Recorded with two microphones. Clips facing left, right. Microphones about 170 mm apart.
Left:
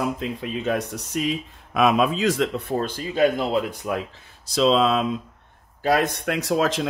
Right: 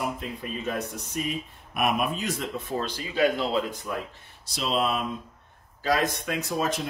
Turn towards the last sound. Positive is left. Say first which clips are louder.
# left 6 dB
turn(degrees=90)